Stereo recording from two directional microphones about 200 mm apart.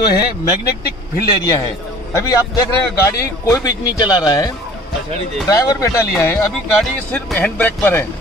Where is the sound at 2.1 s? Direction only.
15° left (ahead or behind).